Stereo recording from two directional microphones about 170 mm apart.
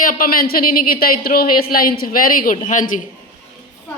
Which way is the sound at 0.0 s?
55° left (ahead or behind).